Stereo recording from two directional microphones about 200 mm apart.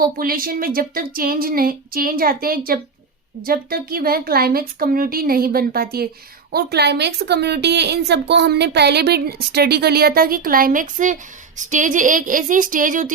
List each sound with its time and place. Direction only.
0.0 s a woman's voice: 45° right (ahead or behind)